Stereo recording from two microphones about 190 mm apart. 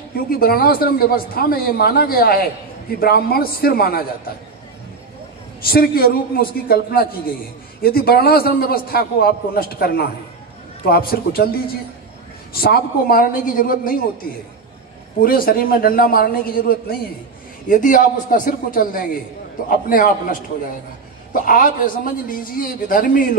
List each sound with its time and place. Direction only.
0.1 s a man's voice: 50° left (ahead or behind)
5.6 s a man's voice: 50° left (ahead or behind)
15.1 s a man's voice: 50° left (ahead or behind)